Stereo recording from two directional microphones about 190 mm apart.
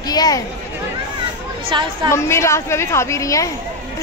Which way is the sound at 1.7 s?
25° right (ahead or behind).